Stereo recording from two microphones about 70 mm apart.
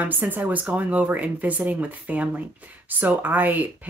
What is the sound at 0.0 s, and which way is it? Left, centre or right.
Speech, right.